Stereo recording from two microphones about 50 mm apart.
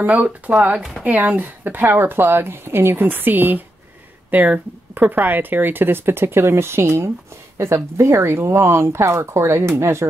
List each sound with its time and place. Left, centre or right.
0.0 s speech: right